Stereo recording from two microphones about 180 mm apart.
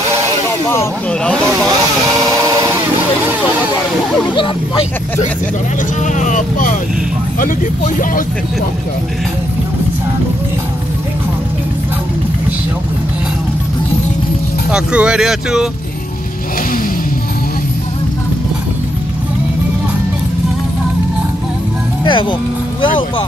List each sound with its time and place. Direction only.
0.5 s speech: 15° left (ahead or behind)
1.7 s vehicle: 20° right (ahead or behind)
4.3 s speech: 25° left (ahead or behind)
6.0 s speech: 45° left (ahead or behind)
14.7 s speech: 5° right (ahead or behind)
22.0 s speech: 25° left (ahead or behind)